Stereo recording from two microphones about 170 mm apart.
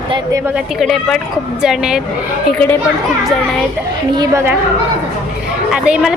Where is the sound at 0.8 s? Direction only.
5° left (ahead or behind).